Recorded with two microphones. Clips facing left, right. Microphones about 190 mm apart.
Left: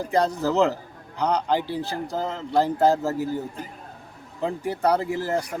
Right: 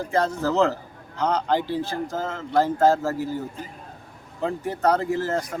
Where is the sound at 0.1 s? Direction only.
15° left (ahead or behind).